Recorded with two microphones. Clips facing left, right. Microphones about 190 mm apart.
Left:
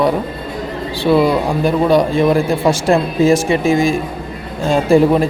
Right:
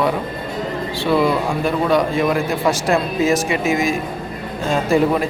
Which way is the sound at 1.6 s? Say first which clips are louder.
Left 5 dB; 30° left (ahead or behind).